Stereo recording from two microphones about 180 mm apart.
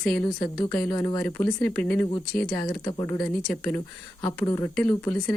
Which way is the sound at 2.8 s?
20° left (ahead or behind).